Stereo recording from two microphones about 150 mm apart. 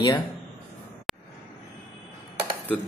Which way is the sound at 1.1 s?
Centre (ahead or behind).